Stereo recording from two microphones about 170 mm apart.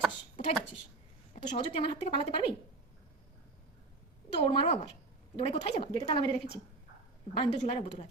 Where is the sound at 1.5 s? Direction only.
30° left (ahead or behind).